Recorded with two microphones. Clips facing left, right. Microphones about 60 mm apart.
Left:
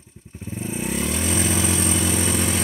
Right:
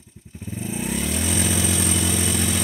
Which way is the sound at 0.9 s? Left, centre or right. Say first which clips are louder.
Left 1 dB; left.